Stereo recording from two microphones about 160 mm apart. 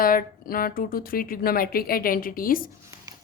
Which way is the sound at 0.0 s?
65° left (ahead or behind).